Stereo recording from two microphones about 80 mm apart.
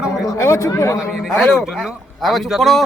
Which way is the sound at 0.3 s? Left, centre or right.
Left.